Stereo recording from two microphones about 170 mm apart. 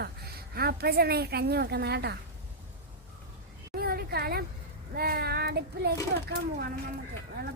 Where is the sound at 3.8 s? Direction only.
65° right (ahead or behind).